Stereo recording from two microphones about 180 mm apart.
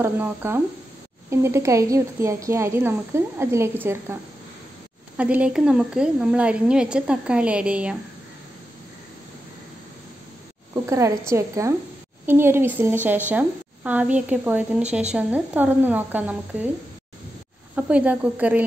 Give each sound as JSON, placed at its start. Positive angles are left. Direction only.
{"t": 0.0, "sound": "a woman's voice", "side_deg": -10}
{"t": 10.7, "sound": "speech", "side_deg": -15}
{"t": 17.7, "sound": "speech", "side_deg": -5}